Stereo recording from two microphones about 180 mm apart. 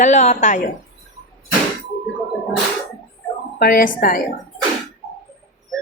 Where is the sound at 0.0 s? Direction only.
40° left (ahead or behind).